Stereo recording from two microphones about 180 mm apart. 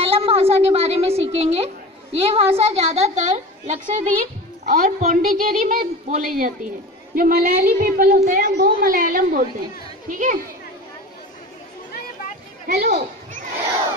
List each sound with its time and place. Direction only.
0.0 s a sound: 30° right (ahead or behind)
1.3 s a woman's voice: 35° right (ahead or behind)
12.6 s speech: 55° right (ahead or behind)